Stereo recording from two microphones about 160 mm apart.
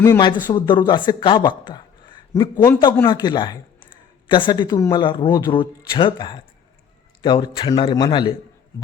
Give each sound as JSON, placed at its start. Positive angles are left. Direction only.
{"t": 0.0, "sound": "speech", "side_deg": 25}